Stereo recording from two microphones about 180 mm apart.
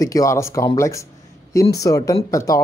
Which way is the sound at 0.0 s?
20° left (ahead or behind).